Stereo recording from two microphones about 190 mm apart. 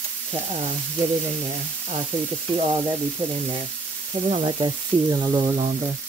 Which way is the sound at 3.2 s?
40° right (ahead or behind).